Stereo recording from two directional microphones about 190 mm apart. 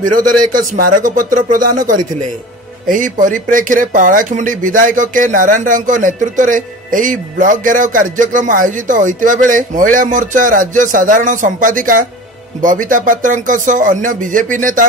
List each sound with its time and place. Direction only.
0.2 s speech: 45° right (ahead or behind)